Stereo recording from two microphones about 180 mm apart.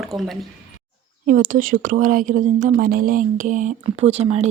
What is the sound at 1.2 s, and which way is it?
Speech, 50° right (ahead or behind).